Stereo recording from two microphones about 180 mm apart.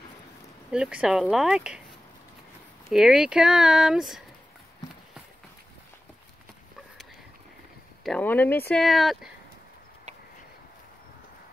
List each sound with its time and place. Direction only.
0.7 s speech: 5° right (ahead or behind)
2.9 s speech: centre (ahead or behind)
8.0 s speech: 5° left (ahead or behind)